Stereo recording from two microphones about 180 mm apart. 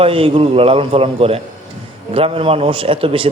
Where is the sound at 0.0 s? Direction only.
30° right (ahead or behind).